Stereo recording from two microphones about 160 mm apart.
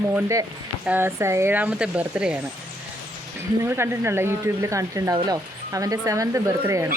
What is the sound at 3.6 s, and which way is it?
Speech, 15° right (ahead or behind).